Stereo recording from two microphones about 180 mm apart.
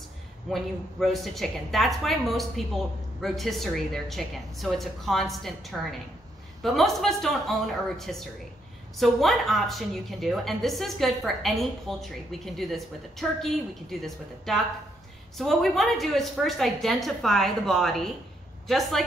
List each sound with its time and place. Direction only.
0.5 s a woman's voice: centre (ahead or behind)